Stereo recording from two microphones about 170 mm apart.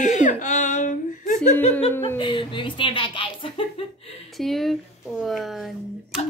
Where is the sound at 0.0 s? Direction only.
45° left (ahead or behind).